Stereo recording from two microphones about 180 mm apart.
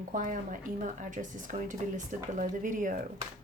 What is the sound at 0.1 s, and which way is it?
Speech, 45° right (ahead or behind).